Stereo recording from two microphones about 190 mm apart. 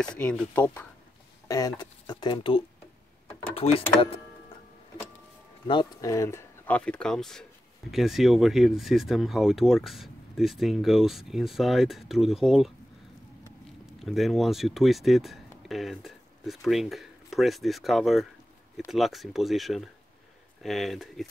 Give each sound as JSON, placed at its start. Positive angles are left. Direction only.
{"t": 0.0, "sound": "speech", "side_deg": 5}
{"t": 1.5, "sound": "speech", "side_deg": 20}
{"t": 5.7, "sound": "speech", "side_deg": 20}
{"t": 14.0, "sound": "speech", "side_deg": 0}